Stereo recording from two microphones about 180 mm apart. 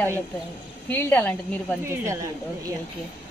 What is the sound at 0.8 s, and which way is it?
Speech, 10° left (ahead or behind).